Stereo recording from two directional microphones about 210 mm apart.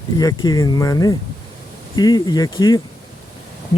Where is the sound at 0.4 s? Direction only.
20° left (ahead or behind).